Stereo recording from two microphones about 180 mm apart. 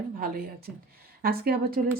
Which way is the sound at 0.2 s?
55° right (ahead or behind).